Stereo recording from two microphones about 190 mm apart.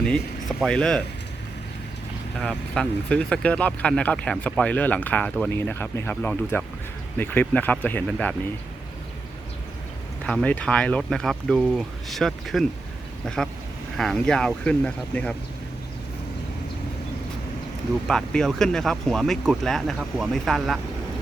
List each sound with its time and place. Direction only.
0.0 s speech: 5° left (ahead or behind)
2.4 s speech: 5° left (ahead or behind)
10.2 s speech: 5° left (ahead or behind)
18.1 s speech: centre (ahead or behind)